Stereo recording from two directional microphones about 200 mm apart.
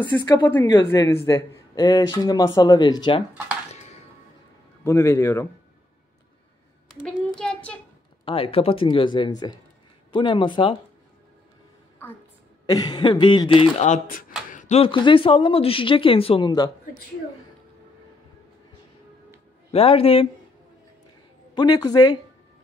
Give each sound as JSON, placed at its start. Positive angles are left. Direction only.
{"t": 0.1, "sound": "speech", "side_deg": 10}
{"t": 4.8, "sound": "speech", "side_deg": 10}
{"t": 7.3, "sound": "child singing", "side_deg": 5}
{"t": 8.3, "sound": "speech", "side_deg": 30}
{"t": 12.6, "sound": "speech", "side_deg": 20}
{"t": 19.7, "sound": "speech", "side_deg": 30}
{"t": 21.5, "sound": "speech", "side_deg": 20}